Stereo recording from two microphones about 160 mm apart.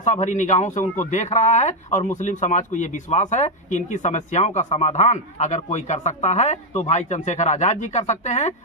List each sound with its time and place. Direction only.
0.0 s speech: 50° left (ahead or behind)